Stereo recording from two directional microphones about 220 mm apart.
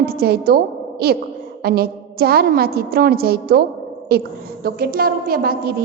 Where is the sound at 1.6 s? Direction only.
45° right (ahead or behind).